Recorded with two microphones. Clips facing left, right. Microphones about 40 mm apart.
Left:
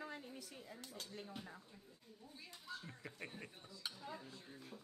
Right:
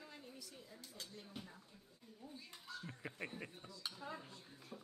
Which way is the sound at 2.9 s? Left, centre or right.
Centre.